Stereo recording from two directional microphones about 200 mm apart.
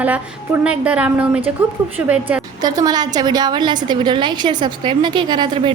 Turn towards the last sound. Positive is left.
turn(degrees=-25)  # may be behind; listen again after turning